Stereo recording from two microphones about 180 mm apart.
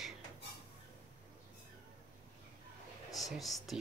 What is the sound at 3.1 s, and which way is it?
Speech, centre (ahead or behind).